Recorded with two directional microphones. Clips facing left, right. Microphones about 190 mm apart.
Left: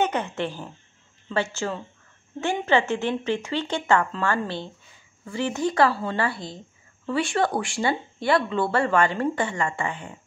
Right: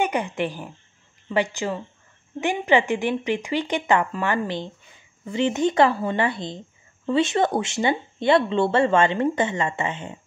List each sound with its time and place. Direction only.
0.0 s speech: 15° right (ahead or behind)